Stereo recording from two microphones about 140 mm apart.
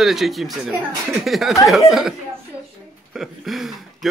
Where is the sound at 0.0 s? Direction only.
Centre (ahead or behind).